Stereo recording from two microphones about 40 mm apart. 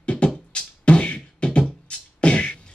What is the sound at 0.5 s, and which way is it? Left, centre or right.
Music, left.